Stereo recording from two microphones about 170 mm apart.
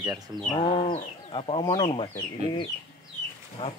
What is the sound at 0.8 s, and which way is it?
Speech, 35° left (ahead or behind).